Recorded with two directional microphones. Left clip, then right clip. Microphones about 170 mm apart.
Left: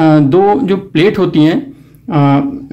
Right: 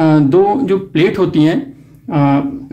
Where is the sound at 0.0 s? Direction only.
20° left (ahead or behind).